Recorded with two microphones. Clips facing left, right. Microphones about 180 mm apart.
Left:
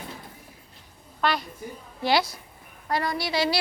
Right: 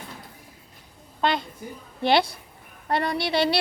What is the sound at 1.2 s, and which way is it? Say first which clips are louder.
A woman's voice: right 1 dB; 25° right (ahead or behind).